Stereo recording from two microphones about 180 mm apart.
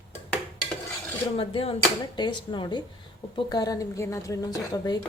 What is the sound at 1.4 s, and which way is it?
A woman's voice, 30° left (ahead or behind).